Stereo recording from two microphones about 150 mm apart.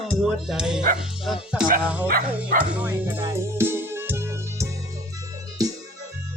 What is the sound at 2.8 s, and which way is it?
Music, 10° right (ahead or behind).